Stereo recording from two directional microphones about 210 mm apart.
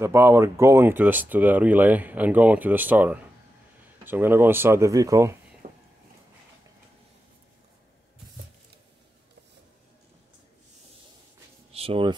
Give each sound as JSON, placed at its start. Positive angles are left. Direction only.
{"t": 0.0, "sound": "speech", "side_deg": -10}
{"t": 5.6, "sound": "a sound", "side_deg": -35}
{"t": 11.7, "sound": "speech", "side_deg": -25}